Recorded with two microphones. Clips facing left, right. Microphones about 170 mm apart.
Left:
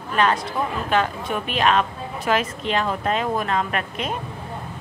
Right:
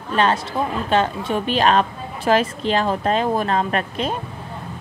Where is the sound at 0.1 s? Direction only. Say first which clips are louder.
Right 2 dB; 30° right (ahead or behind).